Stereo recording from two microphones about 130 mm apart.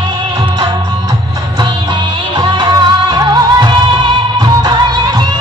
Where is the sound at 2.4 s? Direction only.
35° right (ahead or behind).